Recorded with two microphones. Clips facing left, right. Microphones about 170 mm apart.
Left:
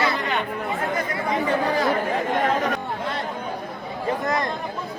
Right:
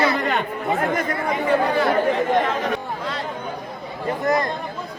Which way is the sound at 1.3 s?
40° left (ahead or behind).